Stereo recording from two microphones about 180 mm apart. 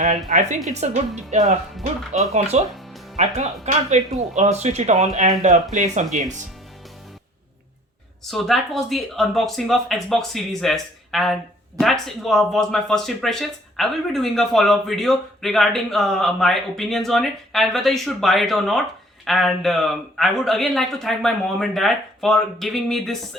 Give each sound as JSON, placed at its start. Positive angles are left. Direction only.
{"t": 0.3, "sound": "speech", "side_deg": -45}
{"t": 8.2, "sound": "speech", "side_deg": 0}